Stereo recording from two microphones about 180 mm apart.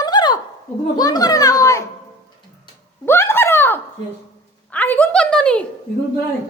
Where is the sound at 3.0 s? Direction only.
15° left (ahead or behind).